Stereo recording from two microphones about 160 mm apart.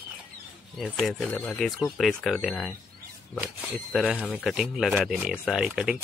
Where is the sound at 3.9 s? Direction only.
Centre (ahead or behind).